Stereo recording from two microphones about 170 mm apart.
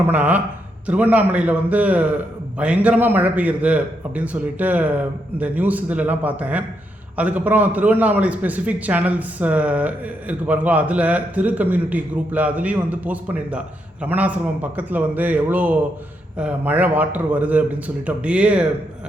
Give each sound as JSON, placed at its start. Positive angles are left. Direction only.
{"t": 0.1, "sound": "a man's voice", "side_deg": -10}